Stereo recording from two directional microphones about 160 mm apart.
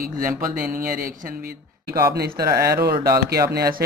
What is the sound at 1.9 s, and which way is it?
Speech, 75° right (ahead or behind).